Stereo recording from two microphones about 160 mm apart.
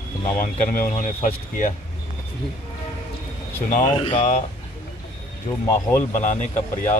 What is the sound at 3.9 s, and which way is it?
Speech, 30° left (ahead or behind).